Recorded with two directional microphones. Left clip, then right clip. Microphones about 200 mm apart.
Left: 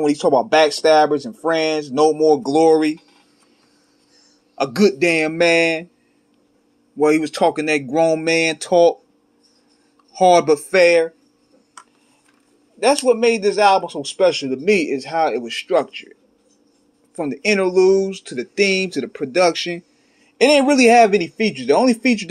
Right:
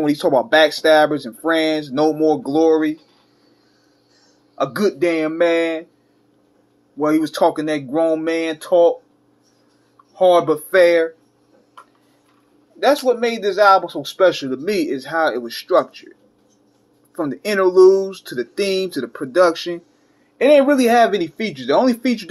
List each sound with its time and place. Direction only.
0.0 s speech: 25° left (ahead or behind)
4.6 s speech: 35° left (ahead or behind)
7.0 s speech: 35° left (ahead or behind)
10.1 s speech: 40° left (ahead or behind)
12.8 s speech: 30° left (ahead or behind)
14.8 s speech: 25° left (ahead or behind)
17.1 s speech: 25° left (ahead or behind)
20.3 s speech: 40° left (ahead or behind)